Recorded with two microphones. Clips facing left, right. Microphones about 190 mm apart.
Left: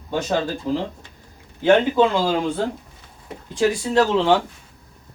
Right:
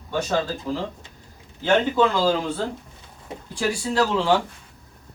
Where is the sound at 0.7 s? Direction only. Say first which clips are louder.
Left 4 dB; 20° left (ahead or behind).